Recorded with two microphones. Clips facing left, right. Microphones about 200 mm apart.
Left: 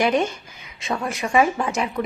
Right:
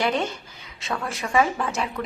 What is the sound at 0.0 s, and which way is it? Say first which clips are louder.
A woman's voice: left 4 dB; 15° left (ahead or behind).